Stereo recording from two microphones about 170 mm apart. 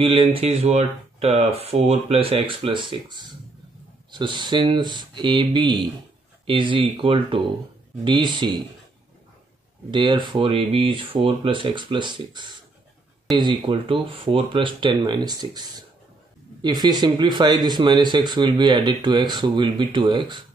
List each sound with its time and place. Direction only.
0.0 s speech: 30° right (ahead or behind)
9.8 s speech: 30° right (ahead or behind)